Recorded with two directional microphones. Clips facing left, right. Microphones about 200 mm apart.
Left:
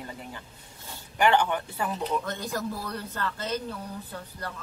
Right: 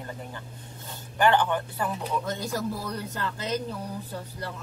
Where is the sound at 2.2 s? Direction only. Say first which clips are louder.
Right 2 dB; 10° right (ahead or behind).